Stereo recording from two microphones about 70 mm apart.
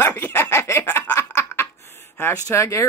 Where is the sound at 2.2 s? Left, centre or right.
Left.